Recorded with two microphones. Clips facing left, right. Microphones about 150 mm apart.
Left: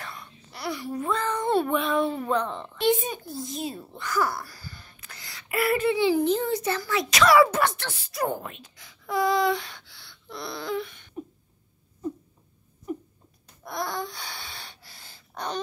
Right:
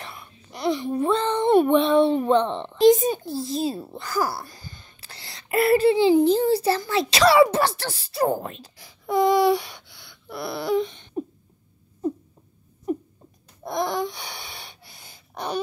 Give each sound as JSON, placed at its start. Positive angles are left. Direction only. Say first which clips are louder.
{"t": 0.1, "sound": "a sound", "louder": "right 2 dB", "side_deg": -15}
{"t": 1.7, "sound": "speech", "louder": "right 7 dB", "side_deg": -30}
{"t": 2.9, "sound": "speech", "louder": "right 5 dB", "side_deg": -40}
{"t": 3.3, "sound": "a child's voice", "louder": "right 7 dB", "side_deg": -30}
{"t": 9.2, "sound": "a sound", "louder": "right 5 dB", "side_deg": -15}
{"t": 13.7, "sound": "gasp", "louder": "right 6 dB", "side_deg": -20}